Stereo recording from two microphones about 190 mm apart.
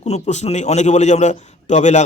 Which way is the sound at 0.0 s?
35° left (ahead or behind).